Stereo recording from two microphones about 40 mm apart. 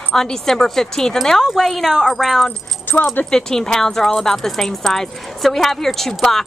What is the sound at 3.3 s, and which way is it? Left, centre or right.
Speech, centre.